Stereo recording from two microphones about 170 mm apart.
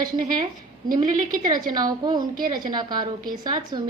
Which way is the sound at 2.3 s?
55° right (ahead or behind).